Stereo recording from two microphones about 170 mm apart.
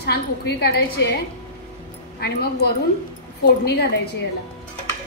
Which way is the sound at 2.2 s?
70° left (ahead or behind).